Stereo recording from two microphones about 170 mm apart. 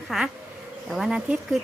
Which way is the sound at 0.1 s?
Centre (ahead or behind).